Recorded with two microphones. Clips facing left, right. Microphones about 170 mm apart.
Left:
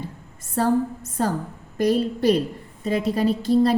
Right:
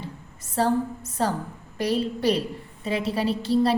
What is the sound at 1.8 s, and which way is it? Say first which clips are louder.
A woman's voice: left 4 dB; 50° left (ahead or behind).